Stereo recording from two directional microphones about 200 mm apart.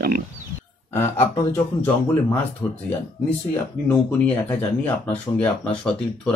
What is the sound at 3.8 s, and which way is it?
Speech, 10° left (ahead or behind).